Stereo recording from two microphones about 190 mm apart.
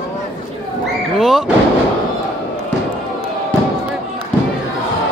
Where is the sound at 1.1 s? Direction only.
Centre (ahead or behind).